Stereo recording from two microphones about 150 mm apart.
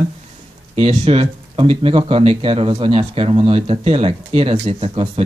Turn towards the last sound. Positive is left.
turn(degrees=-40)  # may be behind; listen again after turning